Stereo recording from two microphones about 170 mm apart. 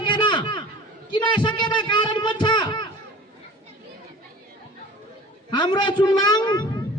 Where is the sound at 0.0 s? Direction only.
30° left (ahead or behind).